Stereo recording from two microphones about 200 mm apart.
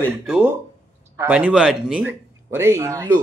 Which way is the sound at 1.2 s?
5° right (ahead or behind).